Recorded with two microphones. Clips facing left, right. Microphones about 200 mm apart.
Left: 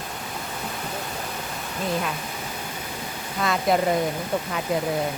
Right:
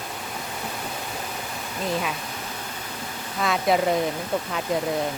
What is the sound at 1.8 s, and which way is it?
Speech, centre (ahead or behind).